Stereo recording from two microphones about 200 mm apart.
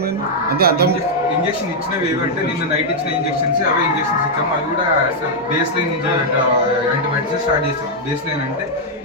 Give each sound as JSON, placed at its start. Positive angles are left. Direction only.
{"t": 0.6, "sound": "speech", "side_deg": -50}